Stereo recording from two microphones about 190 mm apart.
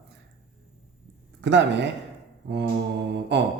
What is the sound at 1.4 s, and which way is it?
Speech, 65° right (ahead or behind).